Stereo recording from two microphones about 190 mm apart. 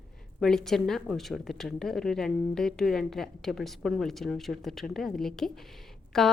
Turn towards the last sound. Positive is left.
turn(degrees=0)  # may be behind; listen again after turning